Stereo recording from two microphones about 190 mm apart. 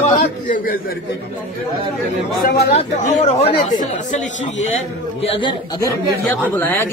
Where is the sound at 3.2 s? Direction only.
35° left (ahead or behind).